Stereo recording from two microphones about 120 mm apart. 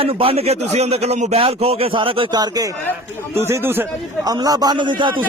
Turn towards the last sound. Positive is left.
turn(degrees=-40)  # may be behind; listen again after turning